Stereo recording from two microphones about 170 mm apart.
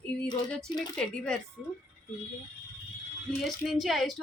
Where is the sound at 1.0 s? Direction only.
5° left (ahead or behind).